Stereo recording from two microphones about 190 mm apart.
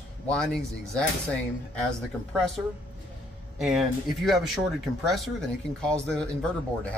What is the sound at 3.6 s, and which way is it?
Speech, centre (ahead or behind).